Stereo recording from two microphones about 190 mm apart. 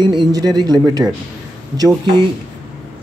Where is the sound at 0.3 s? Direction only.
20° right (ahead or behind).